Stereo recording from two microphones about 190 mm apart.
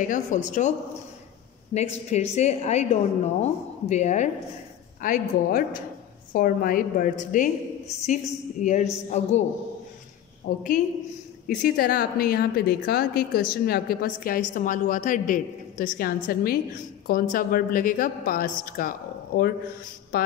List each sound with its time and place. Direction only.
0.1 s a woman's voice: 40° left (ahead or behind)
10.4 s a woman's voice: 45° left (ahead or behind)